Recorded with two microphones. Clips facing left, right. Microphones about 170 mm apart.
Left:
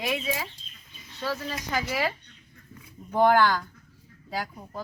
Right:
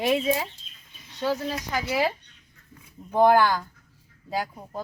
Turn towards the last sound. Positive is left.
turn(degrees=-20)  # may be behind; listen again after turning